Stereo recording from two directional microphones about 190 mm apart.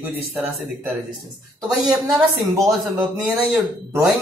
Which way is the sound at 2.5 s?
15° right (ahead or behind).